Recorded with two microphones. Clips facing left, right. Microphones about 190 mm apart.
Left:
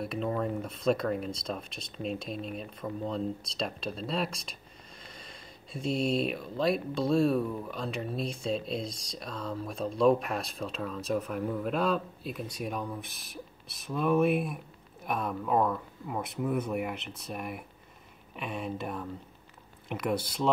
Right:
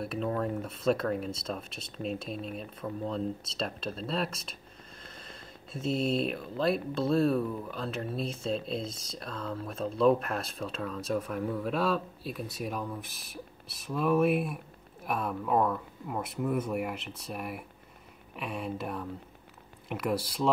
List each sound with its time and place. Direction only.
0.0 s speech: centre (ahead or behind)